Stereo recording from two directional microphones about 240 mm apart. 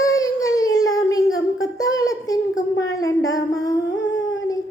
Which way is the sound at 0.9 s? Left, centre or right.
Centre.